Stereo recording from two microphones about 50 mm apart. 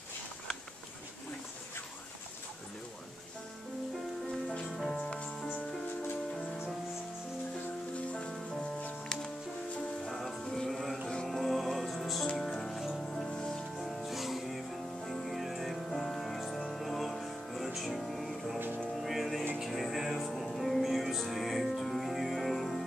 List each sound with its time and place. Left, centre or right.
4.6 s music: centre
4.9 s music: centre
7.9 s music: left
10.0 s music: centre